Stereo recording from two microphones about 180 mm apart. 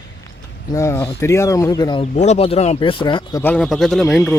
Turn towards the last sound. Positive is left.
turn(degrees=0)  # may be behind; listen again after turning